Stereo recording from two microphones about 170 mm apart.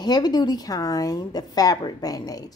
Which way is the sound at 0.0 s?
25° left (ahead or behind).